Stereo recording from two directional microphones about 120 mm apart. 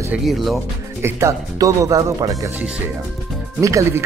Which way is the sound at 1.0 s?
25° right (ahead or behind).